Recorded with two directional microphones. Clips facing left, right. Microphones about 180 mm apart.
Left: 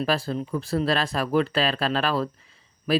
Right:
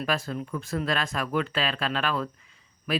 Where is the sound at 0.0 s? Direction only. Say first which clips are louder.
Left 4 dB; 35° left (ahead or behind).